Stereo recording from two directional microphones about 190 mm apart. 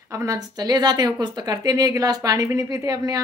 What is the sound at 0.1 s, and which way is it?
A woman's voice, 15° right (ahead or behind).